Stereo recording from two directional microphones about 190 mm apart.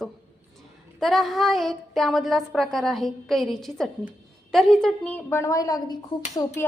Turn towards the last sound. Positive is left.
turn(degrees=20)  # may be behind; listen again after turning